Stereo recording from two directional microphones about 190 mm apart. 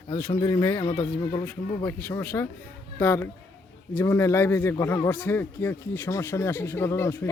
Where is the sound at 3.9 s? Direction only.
15° left (ahead or behind).